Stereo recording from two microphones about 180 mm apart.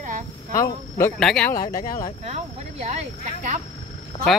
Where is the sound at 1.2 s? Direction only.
5° left (ahead or behind).